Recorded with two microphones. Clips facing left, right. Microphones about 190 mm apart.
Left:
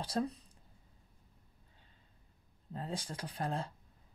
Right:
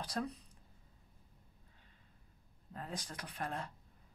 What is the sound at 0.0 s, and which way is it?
Speech, 30° left (ahead or behind).